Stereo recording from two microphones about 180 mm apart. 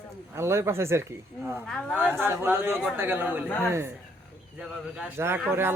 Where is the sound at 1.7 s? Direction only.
5° left (ahead or behind).